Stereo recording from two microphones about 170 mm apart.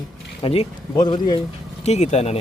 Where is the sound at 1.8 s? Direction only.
40° left (ahead or behind).